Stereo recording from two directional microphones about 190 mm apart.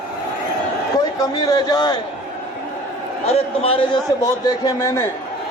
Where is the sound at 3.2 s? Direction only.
30° left (ahead or behind).